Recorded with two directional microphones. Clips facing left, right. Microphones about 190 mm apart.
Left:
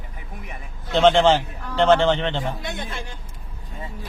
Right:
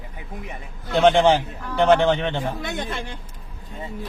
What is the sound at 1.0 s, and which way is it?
A man's voice, 15° right (ahead or behind).